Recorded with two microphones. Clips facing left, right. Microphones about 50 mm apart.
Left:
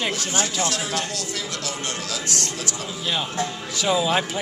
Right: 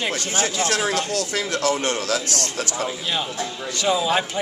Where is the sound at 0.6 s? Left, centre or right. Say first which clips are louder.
Right 4 dB; right.